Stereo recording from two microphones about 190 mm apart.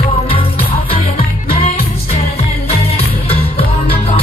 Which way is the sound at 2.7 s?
30° left (ahead or behind).